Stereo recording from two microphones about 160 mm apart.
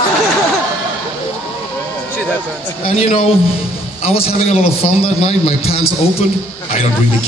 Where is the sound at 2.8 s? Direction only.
40° left (ahead or behind).